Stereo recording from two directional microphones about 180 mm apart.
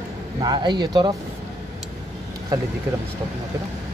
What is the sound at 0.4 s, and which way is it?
Speech, 25° right (ahead or behind).